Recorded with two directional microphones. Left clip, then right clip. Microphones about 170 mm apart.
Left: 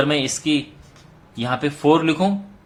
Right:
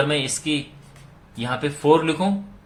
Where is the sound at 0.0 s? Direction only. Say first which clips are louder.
Left 2 dB; 20° left (ahead or behind).